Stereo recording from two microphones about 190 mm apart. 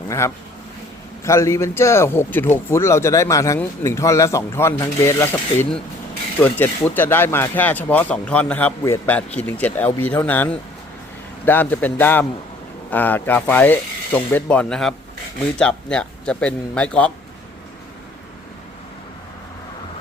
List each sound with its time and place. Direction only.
0.1 s a man's voice: 15° left (ahead or behind)